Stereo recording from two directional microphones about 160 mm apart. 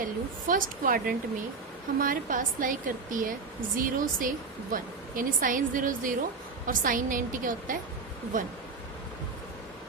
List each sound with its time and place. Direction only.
0.4 s a woman's voice: 60° right (ahead or behind)